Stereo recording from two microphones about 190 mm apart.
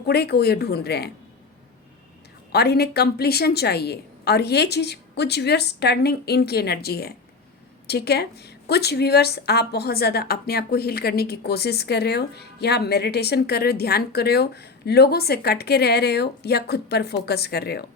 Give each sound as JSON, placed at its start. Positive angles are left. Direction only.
{"t": 0.0, "sound": "a woman's voice", "side_deg": 55}
{"t": 2.5, "sound": "a woman's voice", "side_deg": 60}